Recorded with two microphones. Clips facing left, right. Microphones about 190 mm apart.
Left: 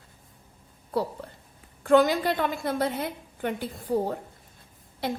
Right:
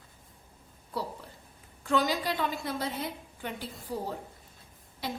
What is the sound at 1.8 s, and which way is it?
A woman's voice, 55° left (ahead or behind).